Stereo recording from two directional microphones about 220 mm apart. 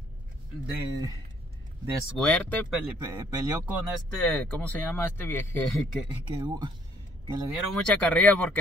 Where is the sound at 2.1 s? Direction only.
5° left (ahead or behind).